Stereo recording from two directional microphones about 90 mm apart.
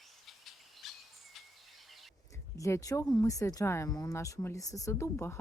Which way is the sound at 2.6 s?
35° left (ahead or behind).